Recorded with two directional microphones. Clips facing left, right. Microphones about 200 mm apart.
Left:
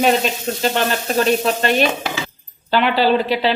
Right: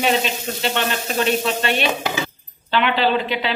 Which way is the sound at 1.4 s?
40° left (ahead or behind).